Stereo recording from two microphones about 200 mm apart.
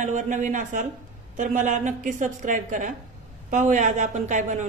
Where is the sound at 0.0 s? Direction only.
40° right (ahead or behind).